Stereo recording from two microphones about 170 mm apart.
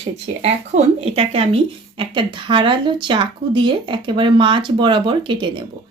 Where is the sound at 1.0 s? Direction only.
35° right (ahead or behind).